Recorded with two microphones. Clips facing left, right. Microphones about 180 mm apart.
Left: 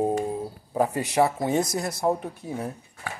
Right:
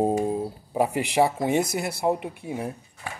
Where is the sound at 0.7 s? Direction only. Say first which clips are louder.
Even; 15° right (ahead or behind).